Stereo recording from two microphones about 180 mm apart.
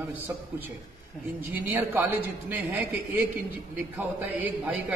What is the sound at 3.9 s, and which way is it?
A man's voice, 10° right (ahead or behind).